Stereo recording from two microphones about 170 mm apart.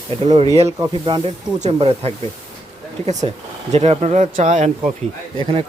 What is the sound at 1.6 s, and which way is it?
Speech, 35° right (ahead or behind).